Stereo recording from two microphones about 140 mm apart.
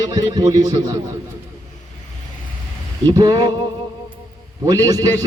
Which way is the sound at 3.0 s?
30° right (ahead or behind).